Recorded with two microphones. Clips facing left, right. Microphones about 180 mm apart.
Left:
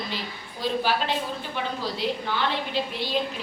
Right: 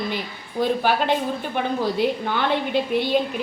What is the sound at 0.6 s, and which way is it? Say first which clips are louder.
A woman's voice: right 5 dB; 55° right (ahead or behind).